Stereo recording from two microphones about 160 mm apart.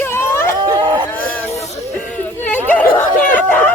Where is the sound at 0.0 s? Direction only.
15° left (ahead or behind).